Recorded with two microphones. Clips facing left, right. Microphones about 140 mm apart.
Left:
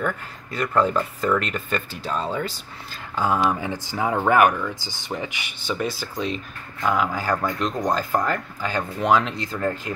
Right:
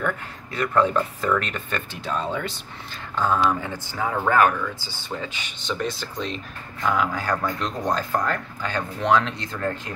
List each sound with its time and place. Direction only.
0.0 s speech: centre (ahead or behind)